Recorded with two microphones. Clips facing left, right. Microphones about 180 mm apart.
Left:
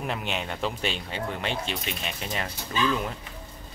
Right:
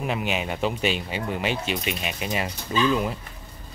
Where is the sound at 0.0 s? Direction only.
5° right (ahead or behind).